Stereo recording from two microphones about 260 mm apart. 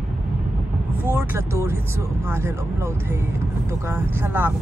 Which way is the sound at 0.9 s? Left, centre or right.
Centre.